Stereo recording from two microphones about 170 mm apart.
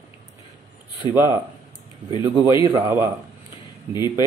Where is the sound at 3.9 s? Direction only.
25° left (ahead or behind).